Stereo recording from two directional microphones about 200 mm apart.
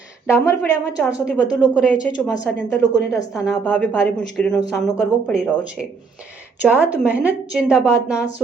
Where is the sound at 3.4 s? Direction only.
5° left (ahead or behind).